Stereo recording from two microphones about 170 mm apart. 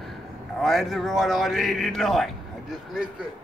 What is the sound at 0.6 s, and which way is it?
Speech, centre (ahead or behind).